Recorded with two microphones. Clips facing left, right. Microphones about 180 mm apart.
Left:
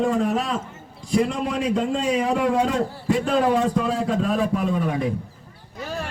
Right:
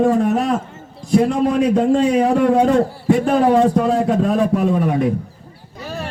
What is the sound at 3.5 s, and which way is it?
Speech, 60° right (ahead or behind).